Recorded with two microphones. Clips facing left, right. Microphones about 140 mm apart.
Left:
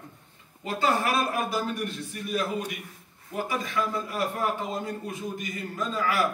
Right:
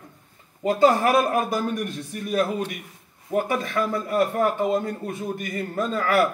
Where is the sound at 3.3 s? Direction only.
55° right (ahead or behind).